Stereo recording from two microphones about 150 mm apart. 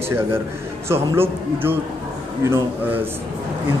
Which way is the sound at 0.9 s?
15° right (ahead or behind).